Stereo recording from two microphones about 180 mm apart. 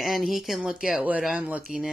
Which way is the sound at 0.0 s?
Centre (ahead or behind).